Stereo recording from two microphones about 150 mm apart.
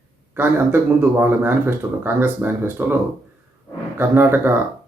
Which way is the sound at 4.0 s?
15° right (ahead or behind).